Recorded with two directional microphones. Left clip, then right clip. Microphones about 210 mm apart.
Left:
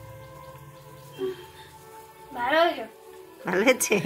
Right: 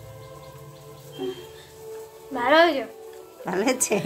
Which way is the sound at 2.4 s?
30° right (ahead or behind).